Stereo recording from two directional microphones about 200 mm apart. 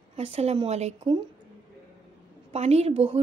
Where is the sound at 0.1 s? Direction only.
30° right (ahead or behind).